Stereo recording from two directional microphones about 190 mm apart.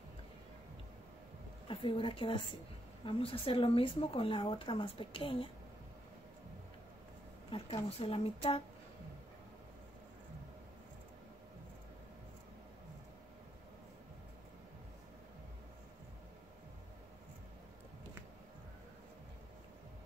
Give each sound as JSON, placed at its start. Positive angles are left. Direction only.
{"t": 1.7, "sound": "speech", "side_deg": 25}
{"t": 7.5, "sound": "speech", "side_deg": 30}